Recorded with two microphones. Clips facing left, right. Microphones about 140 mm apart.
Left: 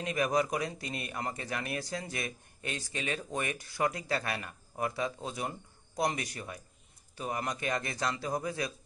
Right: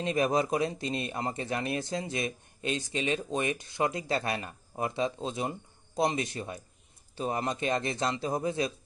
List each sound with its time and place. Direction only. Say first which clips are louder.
0.0 s speech: right 3 dB; 25° right (ahead or behind)